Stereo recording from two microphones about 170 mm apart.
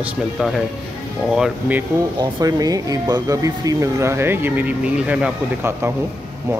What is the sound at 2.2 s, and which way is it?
Speech, 20° right (ahead or behind).